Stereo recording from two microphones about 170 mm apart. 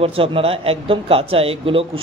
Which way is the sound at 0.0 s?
35° right (ahead or behind).